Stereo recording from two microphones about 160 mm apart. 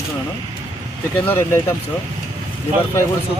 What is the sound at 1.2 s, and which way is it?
Speech, 15° left (ahead or behind).